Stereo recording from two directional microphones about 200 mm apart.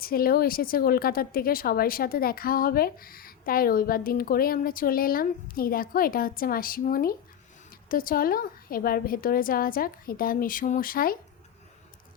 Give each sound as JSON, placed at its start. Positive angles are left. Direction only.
{"t": 0.0, "sound": "speech", "side_deg": 50}